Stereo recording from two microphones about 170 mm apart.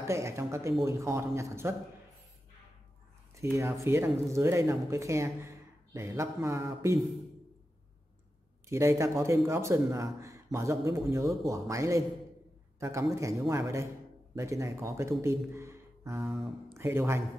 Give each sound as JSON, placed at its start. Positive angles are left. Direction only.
{"t": 0.0, "sound": "a man's voice", "side_deg": -15}
{"t": 3.3, "sound": "a man's voice", "side_deg": -15}
{"t": 8.6, "sound": "a man's voice", "side_deg": -15}